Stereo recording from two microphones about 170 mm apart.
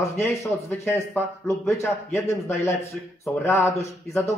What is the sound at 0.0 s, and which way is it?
Speech, 15° left (ahead or behind).